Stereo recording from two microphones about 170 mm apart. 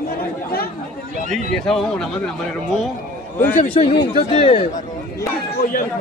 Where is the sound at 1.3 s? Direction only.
Centre (ahead or behind).